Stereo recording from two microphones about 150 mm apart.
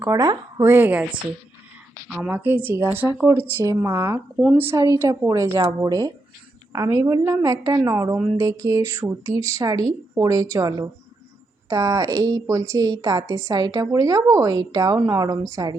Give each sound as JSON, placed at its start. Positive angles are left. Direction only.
{"t": 0.0, "sound": "speech", "side_deg": -20}
{"t": 2.0, "sound": "a woman's voice", "side_deg": -5}